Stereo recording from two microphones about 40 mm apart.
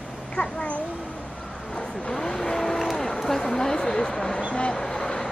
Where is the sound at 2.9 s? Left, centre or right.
Centre.